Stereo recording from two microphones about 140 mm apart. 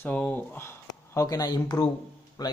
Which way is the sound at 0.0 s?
10° left (ahead or behind).